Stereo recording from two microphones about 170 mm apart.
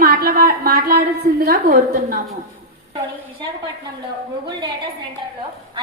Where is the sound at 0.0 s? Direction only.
60° right (ahead or behind).